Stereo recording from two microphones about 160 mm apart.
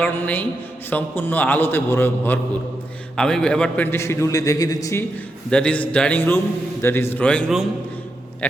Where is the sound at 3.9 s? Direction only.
15° left (ahead or behind).